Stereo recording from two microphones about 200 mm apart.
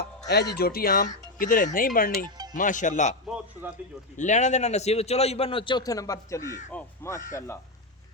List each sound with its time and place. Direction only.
0.6 s a man's voice: 50° left (ahead or behind)
3.2 s a sound: 5° right (ahead or behind)
4.2 s a man's voice: 35° left (ahead or behind); by 7.6 s 15° left (ahead or behind)